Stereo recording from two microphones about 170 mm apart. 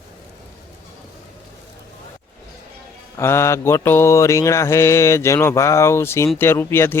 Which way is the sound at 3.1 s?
15° left (ahead or behind).